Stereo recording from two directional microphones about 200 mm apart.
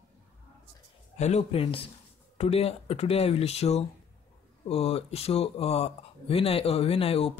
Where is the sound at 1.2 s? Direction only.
30° left (ahead or behind).